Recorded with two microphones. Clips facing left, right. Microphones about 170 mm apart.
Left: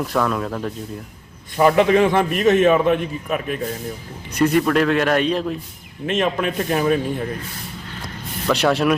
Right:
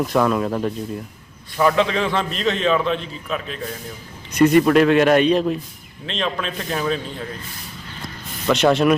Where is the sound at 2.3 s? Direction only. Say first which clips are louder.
Left 7 dB; 50° left (ahead or behind).